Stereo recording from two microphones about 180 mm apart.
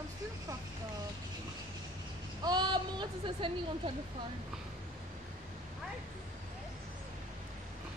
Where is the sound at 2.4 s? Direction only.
25° right (ahead or behind).